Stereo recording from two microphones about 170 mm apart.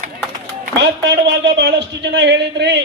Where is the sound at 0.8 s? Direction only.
85° right.